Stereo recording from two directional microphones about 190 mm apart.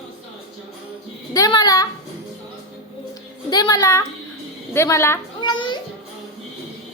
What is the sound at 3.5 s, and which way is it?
Speech, 20° left (ahead or behind).